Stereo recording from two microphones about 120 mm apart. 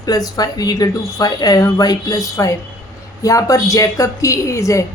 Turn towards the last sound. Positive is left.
turn(degrees=25)  # may be behind; listen again after turning